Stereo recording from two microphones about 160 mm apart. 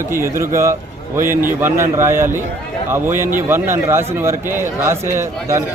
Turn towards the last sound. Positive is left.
turn(degrees=-15)  # may be behind; listen again after turning